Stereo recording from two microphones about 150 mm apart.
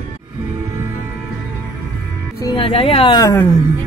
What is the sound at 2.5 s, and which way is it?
Speech, 40° left (ahead or behind).